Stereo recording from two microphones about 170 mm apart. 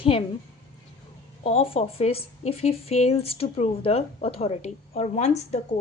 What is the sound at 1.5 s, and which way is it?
A woman's voice, 35° left (ahead or behind).